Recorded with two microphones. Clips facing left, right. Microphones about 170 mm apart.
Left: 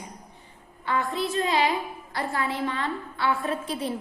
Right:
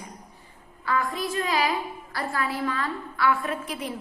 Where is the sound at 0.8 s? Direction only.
25° left (ahead or behind).